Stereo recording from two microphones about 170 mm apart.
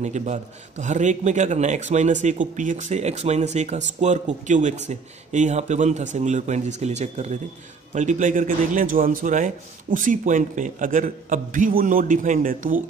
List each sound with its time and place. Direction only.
0.0 s a man's voice: 45° right (ahead or behind)